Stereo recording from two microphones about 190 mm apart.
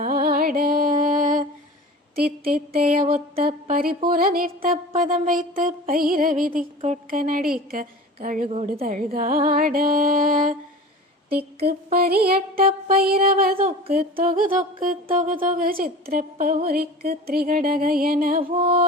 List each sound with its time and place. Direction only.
0.0 s music: 50° right (ahead or behind)
7.7 s a woman's voice: 50° right (ahead or behind)
8.4 s a woman's voice: 35° right (ahead or behind)
8.7 s music: 50° right (ahead or behind)
11.3 s speech: 55° right (ahead or behind)
11.9 s music: 55° right (ahead or behind)
18.5 s music: 30° right (ahead or behind)